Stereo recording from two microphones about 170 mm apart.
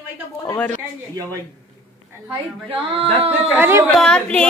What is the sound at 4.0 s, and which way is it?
Speech, 5° left (ahead or behind).